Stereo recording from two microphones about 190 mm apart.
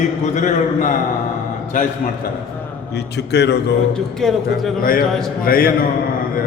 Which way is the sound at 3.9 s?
Centre (ahead or behind).